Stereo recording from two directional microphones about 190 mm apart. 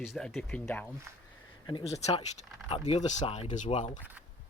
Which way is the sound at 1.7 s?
30° left (ahead or behind).